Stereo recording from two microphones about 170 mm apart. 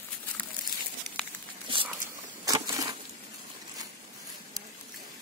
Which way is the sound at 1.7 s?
30° right (ahead or behind).